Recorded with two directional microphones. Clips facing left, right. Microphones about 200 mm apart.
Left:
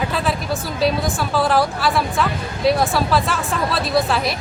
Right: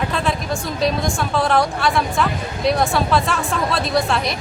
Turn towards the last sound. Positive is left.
turn(degrees=0)  # may be behind; listen again after turning